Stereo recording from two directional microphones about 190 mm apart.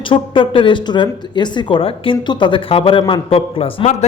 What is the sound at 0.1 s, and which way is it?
Speech, 25° left (ahead or behind).